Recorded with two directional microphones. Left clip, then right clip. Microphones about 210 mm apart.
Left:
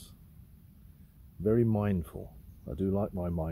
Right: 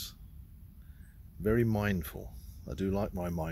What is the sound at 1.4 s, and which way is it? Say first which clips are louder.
Speech: left 2 dB; centre (ahead or behind).